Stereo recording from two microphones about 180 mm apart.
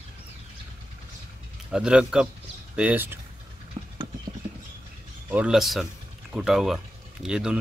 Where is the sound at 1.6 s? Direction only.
5° right (ahead or behind).